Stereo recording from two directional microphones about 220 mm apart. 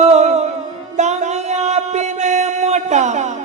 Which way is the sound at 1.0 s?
30° right (ahead or behind).